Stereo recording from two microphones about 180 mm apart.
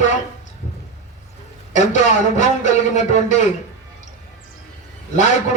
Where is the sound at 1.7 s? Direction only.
40° left (ahead or behind).